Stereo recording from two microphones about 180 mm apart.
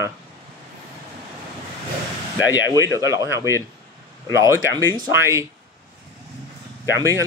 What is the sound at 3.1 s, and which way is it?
Speech, 20° right (ahead or behind).